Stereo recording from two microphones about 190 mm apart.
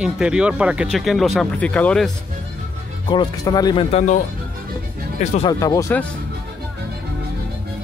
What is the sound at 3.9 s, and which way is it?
Speech, 40° left (ahead or behind).